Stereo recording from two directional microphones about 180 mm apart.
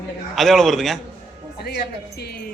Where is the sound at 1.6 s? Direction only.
65° left (ahead or behind).